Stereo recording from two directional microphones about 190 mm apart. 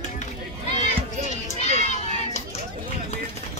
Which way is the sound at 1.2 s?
40° left (ahead or behind).